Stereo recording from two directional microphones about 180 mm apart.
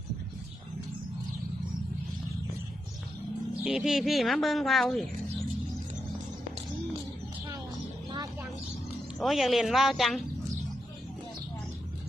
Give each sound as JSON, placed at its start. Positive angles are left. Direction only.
{"t": 3.6, "sound": "speech", "side_deg": -5}
{"t": 8.1, "sound": "vehicle", "side_deg": -20}
{"t": 9.1, "sound": "speech", "side_deg": 0}